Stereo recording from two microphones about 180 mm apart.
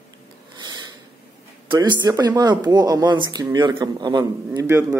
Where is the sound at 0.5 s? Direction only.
25° right (ahead or behind).